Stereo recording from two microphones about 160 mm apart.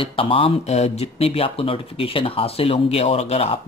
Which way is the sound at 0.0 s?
35° left (ahead or behind).